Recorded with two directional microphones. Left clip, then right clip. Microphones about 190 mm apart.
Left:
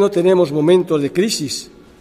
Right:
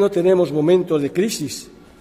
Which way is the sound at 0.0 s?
15° left (ahead or behind).